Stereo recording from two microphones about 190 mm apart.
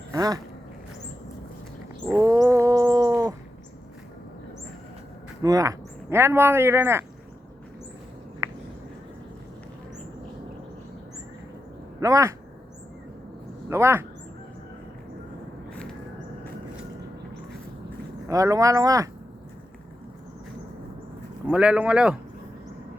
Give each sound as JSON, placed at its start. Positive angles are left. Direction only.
{"t": 0.1, "sound": "a sound", "side_deg": -20}
{"t": 2.0, "sound": "wild animals", "side_deg": -15}
{"t": 5.4, "sound": "speech", "side_deg": -20}
{"t": 11.9, "sound": "speech", "side_deg": -15}
{"t": 13.7, "sound": "speech", "side_deg": -15}
{"t": 18.3, "sound": "speech", "side_deg": -15}
{"t": 21.4, "sound": "speech", "side_deg": -5}